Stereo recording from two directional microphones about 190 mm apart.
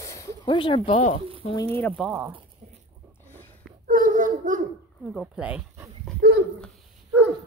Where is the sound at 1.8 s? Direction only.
Centre (ahead or behind).